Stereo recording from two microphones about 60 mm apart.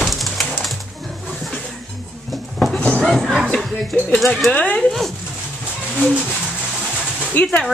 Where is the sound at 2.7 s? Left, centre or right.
Left.